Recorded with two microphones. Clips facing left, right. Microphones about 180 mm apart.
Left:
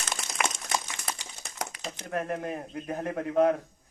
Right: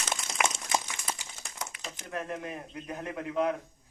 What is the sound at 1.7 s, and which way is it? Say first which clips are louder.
A man's voice: left 5 dB; 45° left (ahead or behind).